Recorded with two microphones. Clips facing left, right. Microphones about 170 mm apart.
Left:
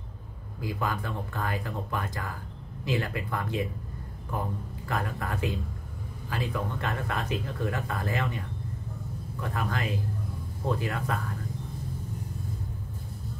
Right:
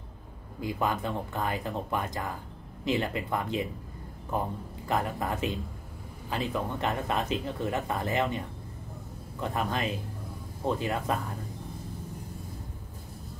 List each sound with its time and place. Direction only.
0.6 s speech: 20° right (ahead or behind)
4.8 s speech: 20° right (ahead or behind)
9.4 s speech: 20° right (ahead or behind)